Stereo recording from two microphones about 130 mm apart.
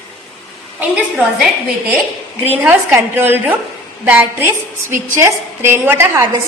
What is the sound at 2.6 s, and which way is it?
A woman's voice, 15° right (ahead or behind).